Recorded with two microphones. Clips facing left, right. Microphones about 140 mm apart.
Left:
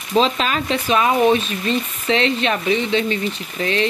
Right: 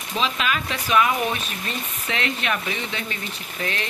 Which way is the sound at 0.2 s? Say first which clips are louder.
Left 5 dB; 30° left (ahead or behind).